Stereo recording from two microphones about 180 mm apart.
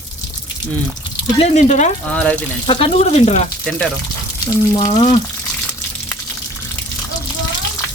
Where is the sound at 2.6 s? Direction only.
30° left (ahead or behind).